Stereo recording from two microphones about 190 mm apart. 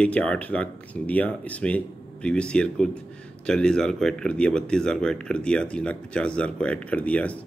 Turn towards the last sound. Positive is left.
turn(degrees=5)  # may be behind; listen again after turning